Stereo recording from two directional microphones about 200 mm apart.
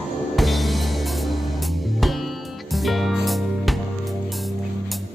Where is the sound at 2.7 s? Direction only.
Centre (ahead or behind).